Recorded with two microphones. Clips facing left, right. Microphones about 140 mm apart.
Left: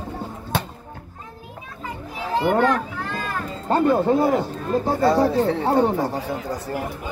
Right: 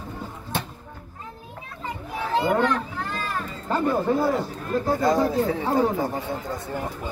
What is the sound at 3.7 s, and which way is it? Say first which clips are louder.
Speech: left 5 dB; 30° left (ahead or behind).